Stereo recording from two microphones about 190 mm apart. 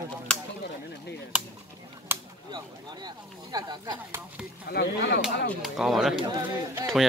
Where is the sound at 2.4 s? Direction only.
20° right (ahead or behind).